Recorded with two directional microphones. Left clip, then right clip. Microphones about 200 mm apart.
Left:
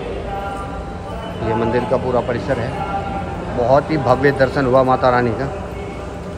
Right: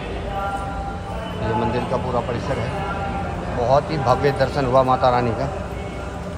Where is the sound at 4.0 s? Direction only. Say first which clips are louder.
Left 4 dB; 30° right (ahead or behind).